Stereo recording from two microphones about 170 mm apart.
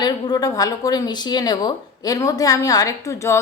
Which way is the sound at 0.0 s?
25° left (ahead or behind).